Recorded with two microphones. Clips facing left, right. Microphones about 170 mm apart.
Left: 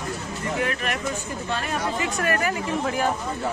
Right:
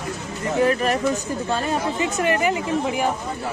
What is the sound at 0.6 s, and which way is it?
Speech, 35° right (ahead or behind).